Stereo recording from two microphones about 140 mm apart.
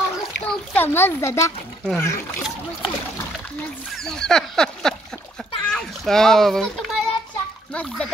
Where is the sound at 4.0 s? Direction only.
5° left (ahead or behind).